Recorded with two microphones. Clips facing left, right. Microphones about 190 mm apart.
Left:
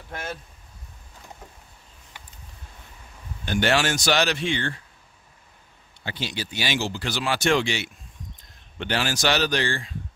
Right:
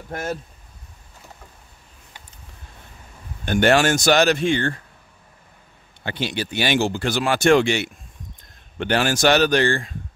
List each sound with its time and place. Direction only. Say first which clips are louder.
0.1 s speech: right 7 dB; 40° right (ahead or behind)
3.4 s speech: right 6 dB; 50° right (ahead or behind)
6.0 s speech: right 6 dB; 60° right (ahead or behind)